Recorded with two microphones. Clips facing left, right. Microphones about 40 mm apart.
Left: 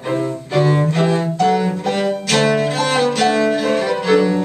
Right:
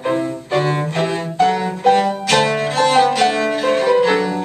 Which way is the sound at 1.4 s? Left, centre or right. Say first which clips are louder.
Right 4 dB; centre.